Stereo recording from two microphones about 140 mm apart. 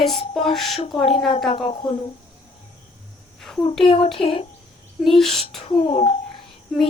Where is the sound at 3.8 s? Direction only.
40° left (ahead or behind).